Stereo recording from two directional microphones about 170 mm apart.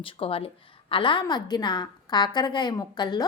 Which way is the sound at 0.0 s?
30° left (ahead or behind).